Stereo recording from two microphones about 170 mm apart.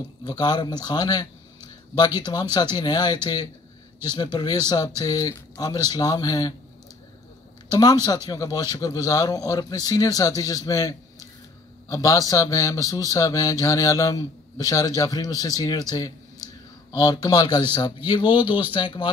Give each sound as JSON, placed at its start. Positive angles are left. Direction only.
{"t": 0.2, "sound": "speech", "side_deg": 25}
{"t": 7.7, "sound": "speech", "side_deg": 25}
{"t": 16.9, "sound": "speech", "side_deg": 20}